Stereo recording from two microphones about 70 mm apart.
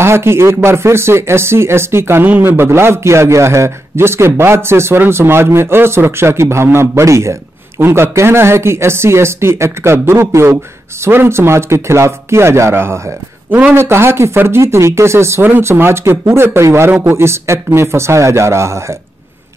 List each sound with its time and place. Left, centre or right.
0.0 s a man's voice: right
13.5 s speech: right
13.7 s a man's voice: right